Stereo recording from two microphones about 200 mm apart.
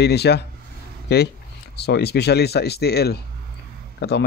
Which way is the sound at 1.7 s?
55° left (ahead or behind).